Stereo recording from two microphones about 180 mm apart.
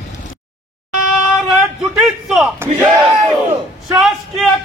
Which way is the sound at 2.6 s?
10° right (ahead or behind).